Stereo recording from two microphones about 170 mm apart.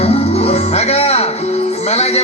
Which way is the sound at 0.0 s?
35° left (ahead or behind).